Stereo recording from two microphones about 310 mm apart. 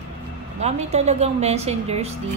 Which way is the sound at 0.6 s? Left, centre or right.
Right.